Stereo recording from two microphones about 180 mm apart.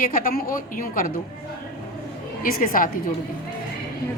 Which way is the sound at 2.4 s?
50° left (ahead or behind).